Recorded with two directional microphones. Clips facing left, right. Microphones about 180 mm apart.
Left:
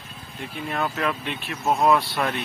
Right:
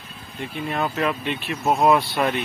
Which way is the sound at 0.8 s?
10° right (ahead or behind).